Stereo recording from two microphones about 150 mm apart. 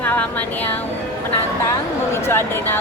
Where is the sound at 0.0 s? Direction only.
10° left (ahead or behind).